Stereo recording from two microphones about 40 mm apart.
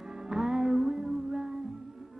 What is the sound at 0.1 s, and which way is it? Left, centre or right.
Music, centre.